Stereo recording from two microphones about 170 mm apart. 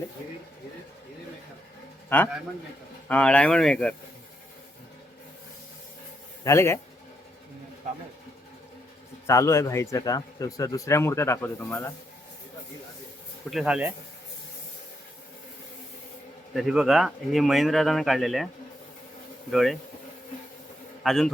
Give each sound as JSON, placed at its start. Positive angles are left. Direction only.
{"t": 2.0, "sound": "a man's voice", "side_deg": 10}
{"t": 6.4, "sound": "speech", "side_deg": 15}
{"t": 9.2, "sound": "speech", "side_deg": 15}
{"t": 13.5, "sound": "speech", "side_deg": -5}
{"t": 16.6, "sound": "speech", "side_deg": -5}
{"t": 19.5, "sound": "speech", "side_deg": 0}
{"t": 21.0, "sound": "speech", "side_deg": 0}